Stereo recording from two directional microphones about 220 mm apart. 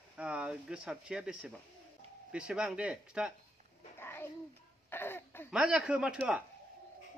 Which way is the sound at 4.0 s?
10° left (ahead or behind).